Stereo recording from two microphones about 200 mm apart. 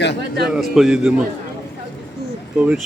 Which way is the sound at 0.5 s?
Centre (ahead or behind).